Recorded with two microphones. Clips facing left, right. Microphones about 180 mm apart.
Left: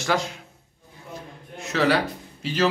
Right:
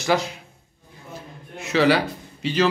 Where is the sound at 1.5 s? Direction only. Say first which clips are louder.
Right 3 dB; centre (ahead or behind).